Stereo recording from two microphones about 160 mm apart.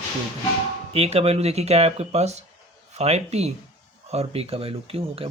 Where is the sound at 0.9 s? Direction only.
40° right (ahead or behind).